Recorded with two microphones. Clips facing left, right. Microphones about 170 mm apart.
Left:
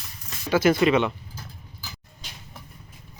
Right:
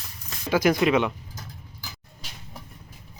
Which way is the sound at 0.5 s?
10° right (ahead or behind).